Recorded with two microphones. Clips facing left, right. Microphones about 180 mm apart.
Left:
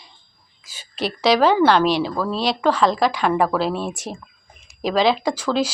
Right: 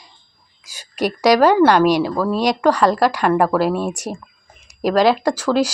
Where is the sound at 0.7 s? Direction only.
10° right (ahead or behind).